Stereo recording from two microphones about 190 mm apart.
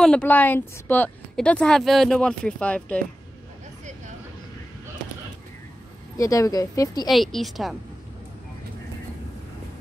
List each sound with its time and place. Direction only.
0.0 s a woman's voice: 5° left (ahead or behind)
6.1 s a woman's voice: 15° left (ahead or behind)
7.1 s a woman's voice: centre (ahead or behind)